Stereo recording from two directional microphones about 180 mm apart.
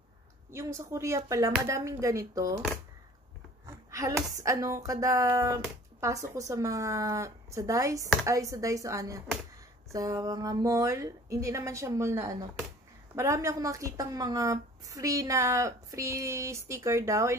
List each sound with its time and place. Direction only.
0.5 s speech: 15° right (ahead or behind)
3.6 s speech: 15° right (ahead or behind)